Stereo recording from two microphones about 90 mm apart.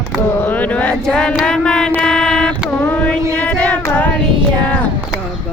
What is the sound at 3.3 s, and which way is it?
Child singing, 15° left (ahead or behind).